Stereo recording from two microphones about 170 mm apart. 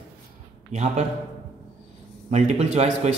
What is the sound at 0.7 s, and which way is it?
Speech, 45° right (ahead or behind).